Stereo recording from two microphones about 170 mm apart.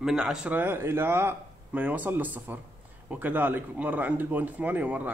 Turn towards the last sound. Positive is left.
turn(degrees=-10)  # may be behind; listen again after turning